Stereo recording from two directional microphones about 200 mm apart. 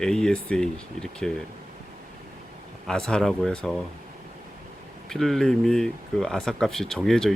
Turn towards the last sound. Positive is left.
turn(degrees=0)  # may be behind; listen again after turning